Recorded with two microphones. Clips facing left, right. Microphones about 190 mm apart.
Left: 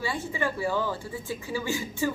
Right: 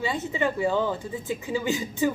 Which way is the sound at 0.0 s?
20° right (ahead or behind).